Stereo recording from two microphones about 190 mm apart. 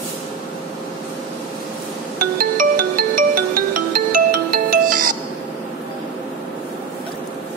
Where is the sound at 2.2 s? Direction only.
50° right (ahead or behind).